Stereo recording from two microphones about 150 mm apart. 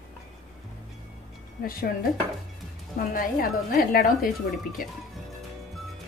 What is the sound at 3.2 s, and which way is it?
A woman's voice, 70° left (ahead or behind).